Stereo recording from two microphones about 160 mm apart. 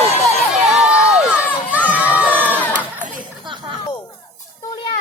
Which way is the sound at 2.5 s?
10° left (ahead or behind).